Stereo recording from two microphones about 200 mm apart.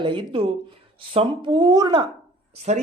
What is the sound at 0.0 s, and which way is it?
Speech, 25° right (ahead or behind).